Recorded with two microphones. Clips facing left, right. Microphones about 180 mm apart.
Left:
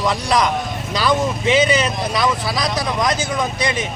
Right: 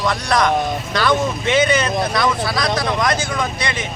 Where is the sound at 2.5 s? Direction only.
15° left (ahead or behind).